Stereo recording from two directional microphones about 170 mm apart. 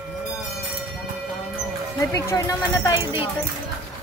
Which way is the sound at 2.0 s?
20° left (ahead or behind).